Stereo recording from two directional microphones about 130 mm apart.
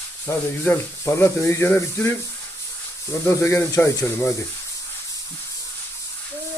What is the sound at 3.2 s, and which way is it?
Speech, 20° left (ahead or behind).